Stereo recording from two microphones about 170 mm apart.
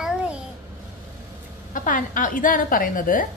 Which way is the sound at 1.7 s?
50° left (ahead or behind).